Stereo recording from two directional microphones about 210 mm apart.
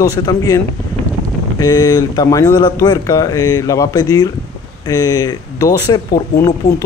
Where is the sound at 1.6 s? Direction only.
20° left (ahead or behind).